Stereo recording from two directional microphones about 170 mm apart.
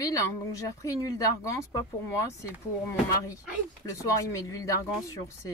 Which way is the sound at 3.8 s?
20° left (ahead or behind).